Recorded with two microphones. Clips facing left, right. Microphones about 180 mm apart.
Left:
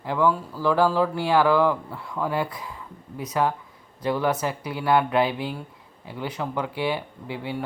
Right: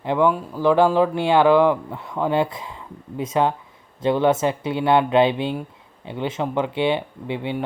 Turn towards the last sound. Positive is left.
turn(degrees=-20)  # may be behind; listen again after turning